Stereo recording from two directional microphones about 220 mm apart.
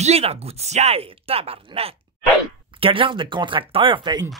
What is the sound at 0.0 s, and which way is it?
Speech, 30° right (ahead or behind).